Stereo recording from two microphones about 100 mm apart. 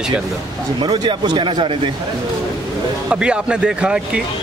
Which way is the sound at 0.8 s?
45° right (ahead or behind).